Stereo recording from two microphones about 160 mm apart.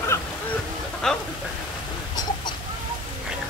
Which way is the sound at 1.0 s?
5° left (ahead or behind).